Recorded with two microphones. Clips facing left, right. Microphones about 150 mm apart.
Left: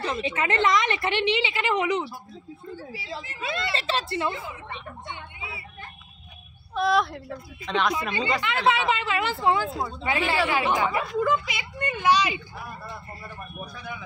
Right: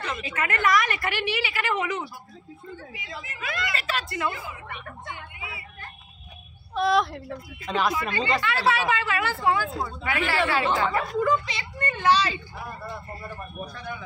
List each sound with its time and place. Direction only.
0.0 s a woman's voice: 30° left (ahead or behind)
2.7 s a woman's voice: 35° left (ahead or behind)
6.7 s a woman's voice: centre (ahead or behind)
8.4 s a woman's voice: 20° left (ahead or behind)